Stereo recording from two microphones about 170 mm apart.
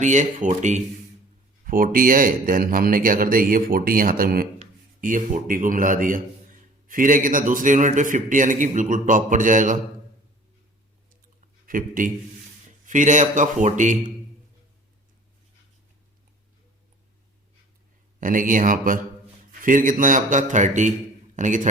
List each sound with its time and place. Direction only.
0.0 s a man's voice: 45° right (ahead or behind)
11.3 s a sound: 50° right (ahead or behind)
12.8 s a man's voice: 50° right (ahead or behind)
18.2 s a man's voice: 50° right (ahead or behind)